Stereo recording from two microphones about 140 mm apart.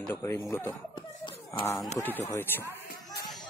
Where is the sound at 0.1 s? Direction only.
20° left (ahead or behind).